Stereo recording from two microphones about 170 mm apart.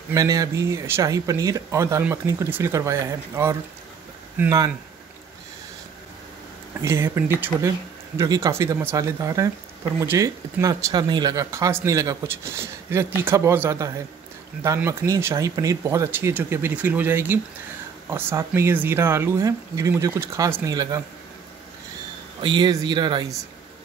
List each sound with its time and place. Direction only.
0.1 s speech: 20° right (ahead or behind)
6.8 s speech: 15° right (ahead or behind)
22.4 s speech: 25° right (ahead or behind)